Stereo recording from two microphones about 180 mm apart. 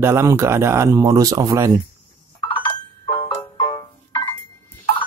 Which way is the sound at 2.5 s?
25° left (ahead or behind).